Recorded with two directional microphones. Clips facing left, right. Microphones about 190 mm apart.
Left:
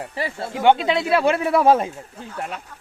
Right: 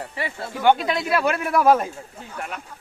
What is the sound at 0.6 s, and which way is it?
Speech, 25° left (ahead or behind).